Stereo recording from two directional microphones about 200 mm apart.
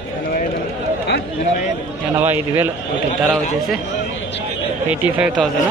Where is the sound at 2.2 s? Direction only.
10° right (ahead or behind).